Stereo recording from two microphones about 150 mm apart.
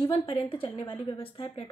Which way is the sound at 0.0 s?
35° left (ahead or behind).